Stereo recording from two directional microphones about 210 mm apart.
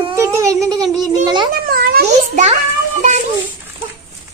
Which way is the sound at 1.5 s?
45° right (ahead or behind).